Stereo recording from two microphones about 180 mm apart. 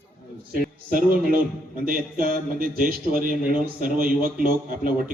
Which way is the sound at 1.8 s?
55° right (ahead or behind).